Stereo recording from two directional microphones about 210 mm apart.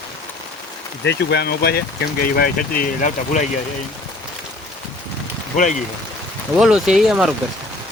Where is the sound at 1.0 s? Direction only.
55° left (ahead or behind); by 3.5 s 35° left (ahead or behind).